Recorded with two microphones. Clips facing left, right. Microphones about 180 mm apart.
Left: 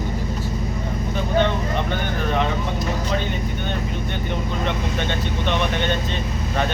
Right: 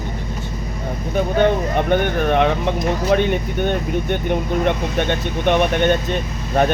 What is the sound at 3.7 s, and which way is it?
Speech, 55° right (ahead or behind).